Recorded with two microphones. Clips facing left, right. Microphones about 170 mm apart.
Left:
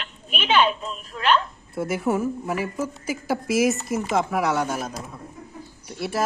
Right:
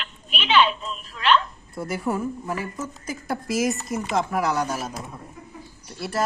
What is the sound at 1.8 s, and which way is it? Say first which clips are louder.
Speech: left 3 dB; centre (ahead or behind).